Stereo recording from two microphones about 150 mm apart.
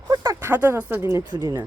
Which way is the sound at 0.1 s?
20° right (ahead or behind).